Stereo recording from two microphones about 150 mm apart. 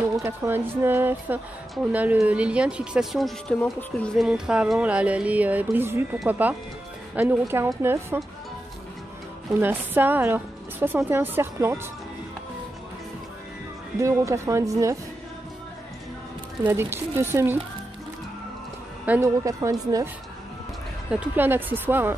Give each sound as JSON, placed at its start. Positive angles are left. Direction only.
{"t": 0.2, "sound": "speech", "side_deg": -15}
{"t": 9.5, "sound": "speech", "side_deg": -15}
{"t": 13.9, "sound": "speech", "side_deg": -20}
{"t": 16.6, "sound": "speech", "side_deg": -15}
{"t": 19.2, "sound": "speech", "side_deg": -20}
{"t": 21.1, "sound": "speech", "side_deg": -10}